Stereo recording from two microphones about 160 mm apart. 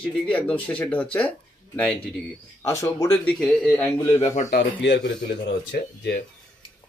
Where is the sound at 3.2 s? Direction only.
5° left (ahead or behind).